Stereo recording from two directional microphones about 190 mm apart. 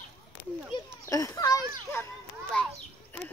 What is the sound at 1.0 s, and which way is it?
Speech, 15° left (ahead or behind).